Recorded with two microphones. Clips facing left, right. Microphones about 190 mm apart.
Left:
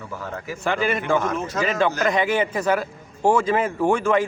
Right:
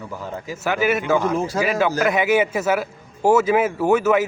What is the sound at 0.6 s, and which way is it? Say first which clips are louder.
Speech: right 3 dB; 5° right (ahead or behind).